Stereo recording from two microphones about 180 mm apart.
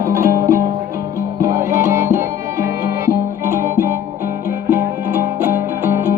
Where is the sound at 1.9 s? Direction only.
15° right (ahead or behind).